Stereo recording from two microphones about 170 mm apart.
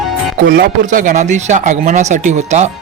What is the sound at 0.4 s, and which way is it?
Speech, 70° right (ahead or behind).